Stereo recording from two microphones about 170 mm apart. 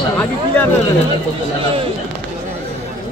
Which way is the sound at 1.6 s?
35° right (ahead or behind).